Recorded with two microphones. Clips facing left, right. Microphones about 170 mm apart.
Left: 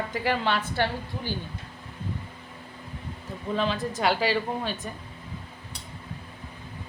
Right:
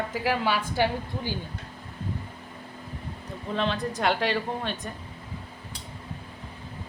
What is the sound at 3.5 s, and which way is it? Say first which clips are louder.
Speech: left 1 dB; 5° left (ahead or behind).